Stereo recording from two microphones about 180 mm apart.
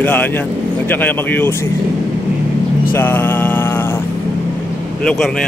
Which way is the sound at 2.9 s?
10° left (ahead or behind).